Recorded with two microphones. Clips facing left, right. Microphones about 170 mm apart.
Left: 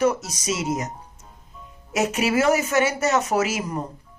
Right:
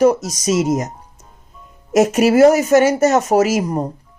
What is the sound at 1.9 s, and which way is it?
A woman's voice, 45° right (ahead or behind).